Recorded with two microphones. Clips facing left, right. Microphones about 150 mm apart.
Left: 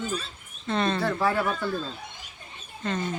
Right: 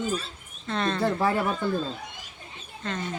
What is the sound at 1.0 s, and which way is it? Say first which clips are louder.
Speech: right 1 dB; 20° right (ahead or behind).